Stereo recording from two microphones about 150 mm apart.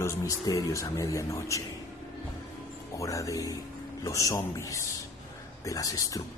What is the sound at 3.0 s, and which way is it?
Speech, 20° left (ahead or behind).